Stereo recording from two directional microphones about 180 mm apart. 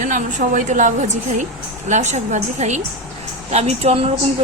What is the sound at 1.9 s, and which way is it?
A woman's voice, 40° right (ahead or behind).